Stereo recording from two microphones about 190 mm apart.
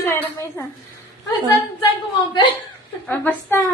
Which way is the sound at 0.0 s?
10° left (ahead or behind).